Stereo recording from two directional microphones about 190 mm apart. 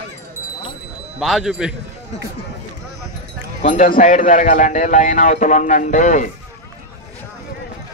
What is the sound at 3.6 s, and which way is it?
A man's voice, 40° left (ahead or behind).